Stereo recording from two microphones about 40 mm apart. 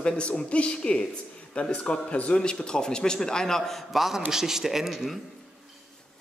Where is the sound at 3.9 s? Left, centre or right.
Centre.